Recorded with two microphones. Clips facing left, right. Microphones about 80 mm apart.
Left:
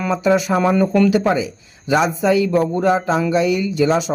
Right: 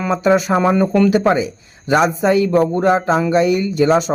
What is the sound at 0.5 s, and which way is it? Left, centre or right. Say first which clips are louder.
Speech: right 1 dB; centre.